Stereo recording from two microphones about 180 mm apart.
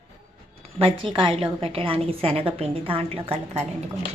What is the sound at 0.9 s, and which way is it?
A woman's voice, 25° right (ahead or behind).